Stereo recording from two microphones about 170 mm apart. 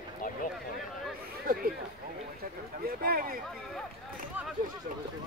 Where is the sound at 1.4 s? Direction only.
60° right (ahead or behind).